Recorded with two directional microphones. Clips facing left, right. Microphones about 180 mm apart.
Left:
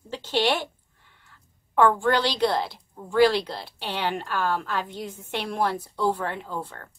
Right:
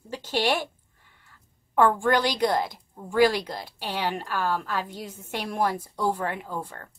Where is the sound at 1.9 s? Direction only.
10° right (ahead or behind).